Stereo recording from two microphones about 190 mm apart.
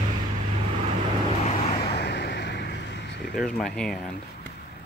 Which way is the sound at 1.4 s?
30° left (ahead or behind).